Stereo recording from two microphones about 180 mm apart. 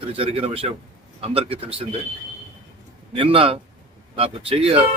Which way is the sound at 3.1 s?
30° right (ahead or behind).